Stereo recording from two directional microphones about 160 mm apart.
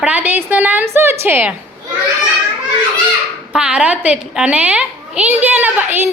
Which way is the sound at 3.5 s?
5° right (ahead or behind).